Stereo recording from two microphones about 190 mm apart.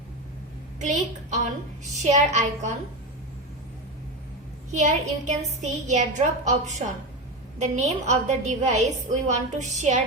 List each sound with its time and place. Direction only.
0.8 s a woman's voice: 40° right (ahead or behind)
4.7 s a woman's voice: 40° right (ahead or behind)